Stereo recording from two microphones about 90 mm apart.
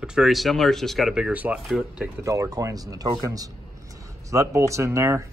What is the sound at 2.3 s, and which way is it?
Speech, 40° right (ahead or behind).